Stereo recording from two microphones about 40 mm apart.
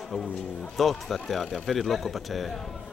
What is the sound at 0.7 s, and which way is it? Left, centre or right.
Speech, centre.